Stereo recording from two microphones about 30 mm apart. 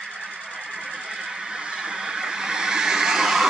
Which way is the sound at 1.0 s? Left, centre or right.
Right.